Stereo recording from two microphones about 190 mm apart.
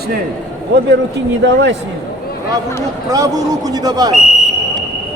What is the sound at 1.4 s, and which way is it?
Speech, 65° right (ahead or behind).